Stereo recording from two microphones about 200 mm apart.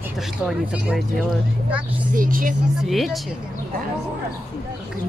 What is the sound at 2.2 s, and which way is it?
Speech, 45° right (ahead or behind).